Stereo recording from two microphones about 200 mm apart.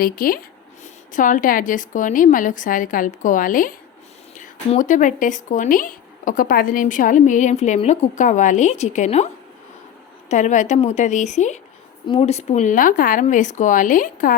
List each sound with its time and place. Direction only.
0.0 s a woman's voice: 45° left (ahead or behind)